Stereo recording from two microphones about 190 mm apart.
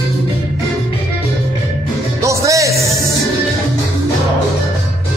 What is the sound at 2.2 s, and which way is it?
Music, 15° right (ahead or behind).